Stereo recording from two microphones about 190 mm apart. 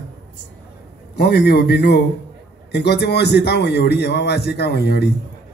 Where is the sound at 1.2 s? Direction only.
60° left (ahead or behind).